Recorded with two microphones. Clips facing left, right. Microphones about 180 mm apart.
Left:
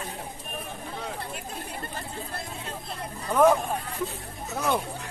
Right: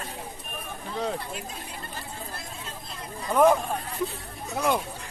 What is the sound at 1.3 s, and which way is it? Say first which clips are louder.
Chatter: left 1 dB; 55° left (ahead or behind).